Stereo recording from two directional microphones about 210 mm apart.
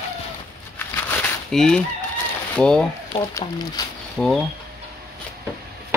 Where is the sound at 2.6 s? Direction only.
5° left (ahead or behind).